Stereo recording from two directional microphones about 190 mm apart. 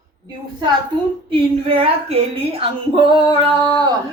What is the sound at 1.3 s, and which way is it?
A woman's voice, 30° right (ahead or behind).